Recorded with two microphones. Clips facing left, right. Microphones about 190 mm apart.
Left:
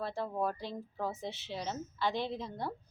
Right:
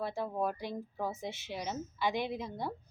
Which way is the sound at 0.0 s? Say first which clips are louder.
Right 1 dB; 10° right (ahead or behind).